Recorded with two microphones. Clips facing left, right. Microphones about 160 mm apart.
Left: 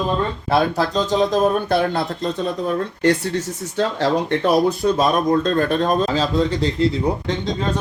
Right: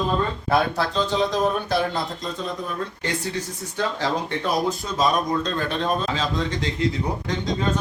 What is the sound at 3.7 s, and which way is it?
Speech, 65° left (ahead or behind).